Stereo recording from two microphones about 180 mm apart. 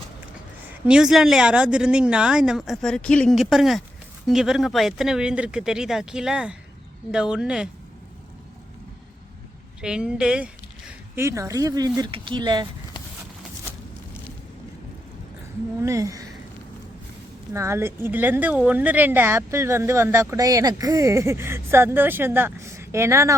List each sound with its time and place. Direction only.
0.9 s speech: 5° right (ahead or behind)
9.8 s speech: 5° right (ahead or behind); by 12.6 s 25° right (ahead or behind)
15.8 s speech: 15° right (ahead or behind)
17.5 s speech: 15° right (ahead or behind)